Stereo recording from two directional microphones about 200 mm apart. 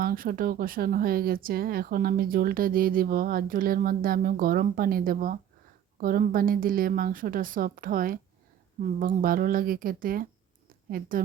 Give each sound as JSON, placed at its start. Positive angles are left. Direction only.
{"t": 0.0, "sound": "speech", "side_deg": -50}